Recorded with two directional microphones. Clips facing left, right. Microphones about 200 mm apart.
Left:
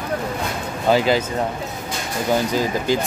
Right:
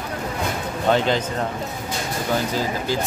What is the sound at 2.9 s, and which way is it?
Speech, 15° left (ahead or behind).